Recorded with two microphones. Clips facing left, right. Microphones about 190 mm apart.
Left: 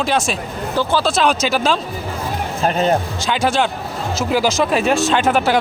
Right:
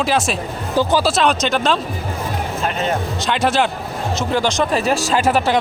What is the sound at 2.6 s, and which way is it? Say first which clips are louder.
Speech: left 6 dB; 35° left (ahead or behind).